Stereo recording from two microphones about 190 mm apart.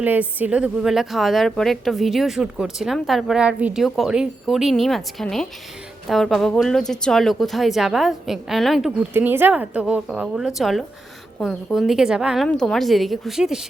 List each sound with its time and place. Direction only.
0.0 s a woman's voice: 10° right (ahead or behind)